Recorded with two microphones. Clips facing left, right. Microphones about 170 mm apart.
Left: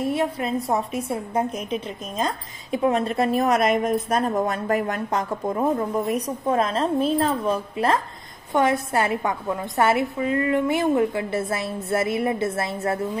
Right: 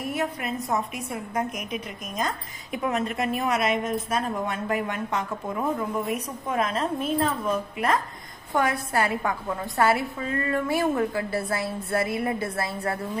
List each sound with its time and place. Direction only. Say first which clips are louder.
0.0 s a woman's voice: left 5 dB; 25° left (ahead or behind)